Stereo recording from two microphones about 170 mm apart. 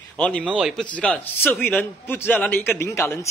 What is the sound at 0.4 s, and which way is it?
Speech, 5° right (ahead or behind).